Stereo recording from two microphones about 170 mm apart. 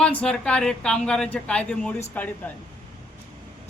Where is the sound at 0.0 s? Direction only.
5° left (ahead or behind).